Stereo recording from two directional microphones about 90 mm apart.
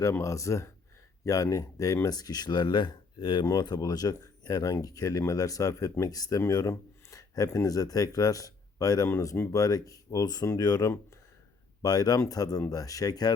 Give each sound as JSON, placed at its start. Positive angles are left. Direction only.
{"t": 0.0, "sound": "speech", "side_deg": 35}
{"t": 3.4, "sound": "speech", "side_deg": 45}